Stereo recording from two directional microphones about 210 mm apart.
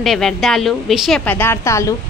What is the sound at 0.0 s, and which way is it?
A woman's voice, centre (ahead or behind).